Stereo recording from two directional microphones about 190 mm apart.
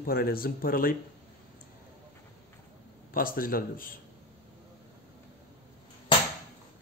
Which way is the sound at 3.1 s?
50° left (ahead or behind).